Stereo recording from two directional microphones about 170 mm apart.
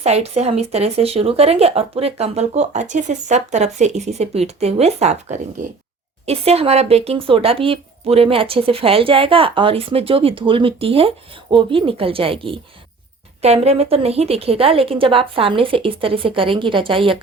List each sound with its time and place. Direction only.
0.0 s speech: 40° right (ahead or behind)
6.2 s speech: 35° right (ahead or behind)